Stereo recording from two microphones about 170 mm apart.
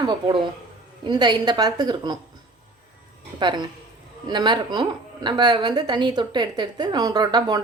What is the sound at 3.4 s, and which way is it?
A woman's voice, 25° right (ahead or behind).